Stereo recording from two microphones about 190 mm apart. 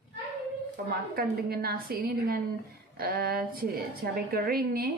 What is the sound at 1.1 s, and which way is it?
A woman's voice, 55° right (ahead or behind).